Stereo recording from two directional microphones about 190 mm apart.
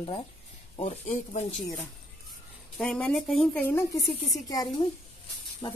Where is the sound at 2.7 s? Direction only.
5° left (ahead or behind); by 5.8 s 20° left (ahead or behind).